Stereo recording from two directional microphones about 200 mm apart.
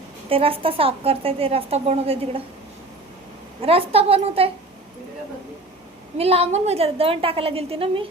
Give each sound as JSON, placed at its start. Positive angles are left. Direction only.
{"t": 0.3, "sound": "a woman's voice", "side_deg": -30}
{"t": 3.6, "sound": "a woman's voice", "side_deg": -30}
{"t": 6.1, "sound": "a woman's voice", "side_deg": -30}